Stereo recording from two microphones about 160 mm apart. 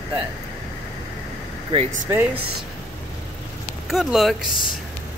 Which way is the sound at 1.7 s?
35° right (ahead or behind).